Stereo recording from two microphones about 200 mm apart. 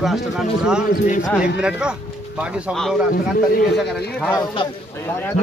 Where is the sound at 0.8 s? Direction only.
40° left (ahead or behind).